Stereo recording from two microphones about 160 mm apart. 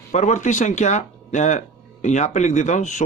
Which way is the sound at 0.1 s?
50° left (ahead or behind).